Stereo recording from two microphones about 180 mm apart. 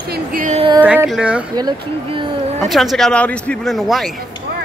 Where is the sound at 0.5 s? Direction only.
30° right (ahead or behind).